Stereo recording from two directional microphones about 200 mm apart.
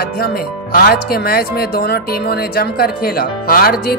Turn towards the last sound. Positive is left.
turn(degrees=45)  # may be behind; listen again after turning